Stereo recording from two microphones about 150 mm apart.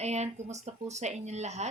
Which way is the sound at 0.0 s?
50° right (ahead or behind).